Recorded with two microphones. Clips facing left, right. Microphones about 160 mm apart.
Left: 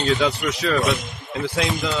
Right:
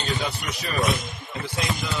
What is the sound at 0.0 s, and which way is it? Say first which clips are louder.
A man's voice: left 8 dB; 85° left.